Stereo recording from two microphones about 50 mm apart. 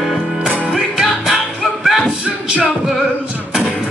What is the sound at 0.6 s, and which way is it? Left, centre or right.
Music, centre.